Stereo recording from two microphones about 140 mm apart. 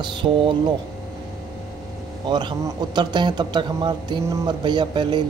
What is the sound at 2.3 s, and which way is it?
Speech, 30° right (ahead or behind).